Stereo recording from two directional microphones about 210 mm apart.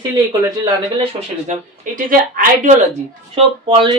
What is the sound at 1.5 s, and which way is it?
Speech, 40° right (ahead or behind).